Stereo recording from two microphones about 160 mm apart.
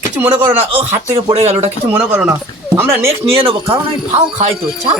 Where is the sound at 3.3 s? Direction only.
35° right (ahead or behind).